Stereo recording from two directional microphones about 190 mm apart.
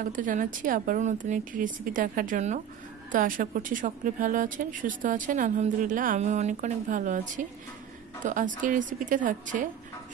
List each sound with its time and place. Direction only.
0.0 s speech: 45° right (ahead or behind)